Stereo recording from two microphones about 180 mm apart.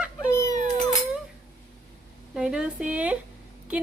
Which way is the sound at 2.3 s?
5° right (ahead or behind).